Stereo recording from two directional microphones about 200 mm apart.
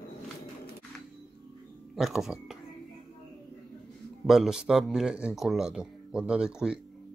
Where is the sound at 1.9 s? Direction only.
Centre (ahead or behind).